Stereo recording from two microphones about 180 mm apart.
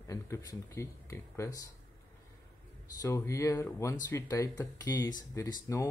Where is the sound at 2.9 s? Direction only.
15° left (ahead or behind).